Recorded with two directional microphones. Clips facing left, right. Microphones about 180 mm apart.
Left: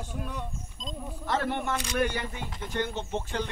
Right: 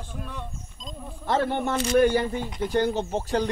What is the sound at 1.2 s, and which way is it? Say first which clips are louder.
Speech: right 5 dB; 30° right (ahead or behind).